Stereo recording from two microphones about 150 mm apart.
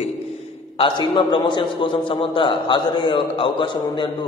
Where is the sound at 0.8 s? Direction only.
30° left (ahead or behind).